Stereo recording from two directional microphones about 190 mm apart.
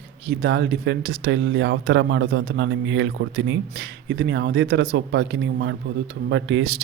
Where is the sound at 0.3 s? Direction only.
65° right (ahead or behind).